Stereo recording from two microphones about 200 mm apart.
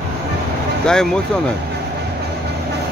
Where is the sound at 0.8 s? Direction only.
5° left (ahead or behind).